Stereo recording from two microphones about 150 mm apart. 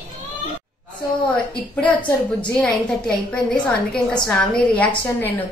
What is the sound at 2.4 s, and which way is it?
A woman's voice, 5° left (ahead or behind).